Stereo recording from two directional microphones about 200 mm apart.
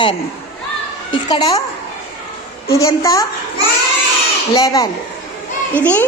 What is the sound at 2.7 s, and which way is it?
Speech, 15° left (ahead or behind).